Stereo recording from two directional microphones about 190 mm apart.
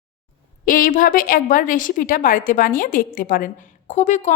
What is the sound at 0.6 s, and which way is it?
A woman's voice, 45° left (ahead or behind).